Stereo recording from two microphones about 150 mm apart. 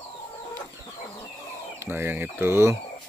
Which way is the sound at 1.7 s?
15° right (ahead or behind).